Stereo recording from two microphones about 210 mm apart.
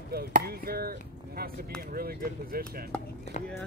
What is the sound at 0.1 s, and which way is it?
Speech, 45° right (ahead or behind).